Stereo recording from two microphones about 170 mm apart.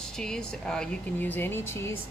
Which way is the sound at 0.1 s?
5° left (ahead or behind).